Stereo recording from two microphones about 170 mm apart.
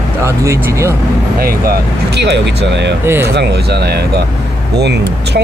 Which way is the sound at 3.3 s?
75° right (ahead or behind).